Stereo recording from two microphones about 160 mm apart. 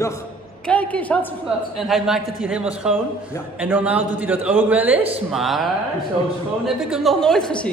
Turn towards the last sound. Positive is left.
turn(degrees=5)  # may be behind; listen again after turning